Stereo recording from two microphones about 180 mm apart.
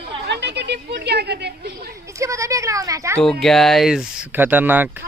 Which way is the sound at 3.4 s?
Centre (ahead or behind).